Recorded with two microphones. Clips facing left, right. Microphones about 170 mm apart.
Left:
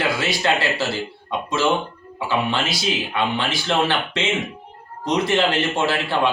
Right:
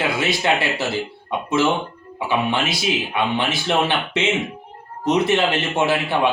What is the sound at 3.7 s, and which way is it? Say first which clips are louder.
Speech: even; 15° right (ahead or behind).